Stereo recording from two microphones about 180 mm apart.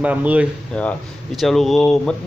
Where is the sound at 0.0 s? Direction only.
10° right (ahead or behind).